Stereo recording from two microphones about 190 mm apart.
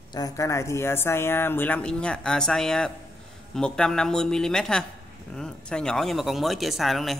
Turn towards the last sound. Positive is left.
turn(degrees=0)  # may be behind; listen again after turning